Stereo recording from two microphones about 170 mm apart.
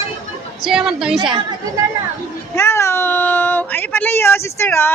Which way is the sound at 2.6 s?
15° left (ahead or behind).